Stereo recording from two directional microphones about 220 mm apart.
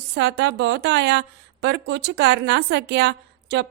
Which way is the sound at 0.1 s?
50° right (ahead or behind).